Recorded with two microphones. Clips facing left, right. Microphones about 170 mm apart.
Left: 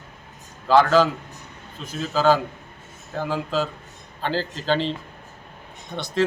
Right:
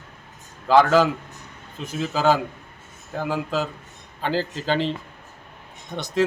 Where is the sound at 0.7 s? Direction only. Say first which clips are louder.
Even; 15° right (ahead or behind).